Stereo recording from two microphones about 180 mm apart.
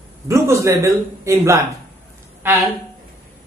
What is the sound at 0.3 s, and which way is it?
Speech, 15° right (ahead or behind).